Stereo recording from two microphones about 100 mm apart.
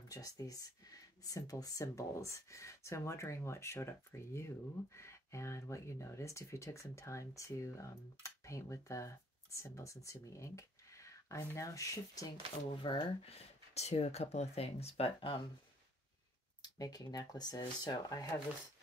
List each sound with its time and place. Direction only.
0.1 s speech: 35° left (ahead or behind)
12.8 s speech: 55° left (ahead or behind)
13.3 s speech: 90° left; by 15.4 s 60° left (ahead or behind)
16.6 s speech: 40° left (ahead or behind)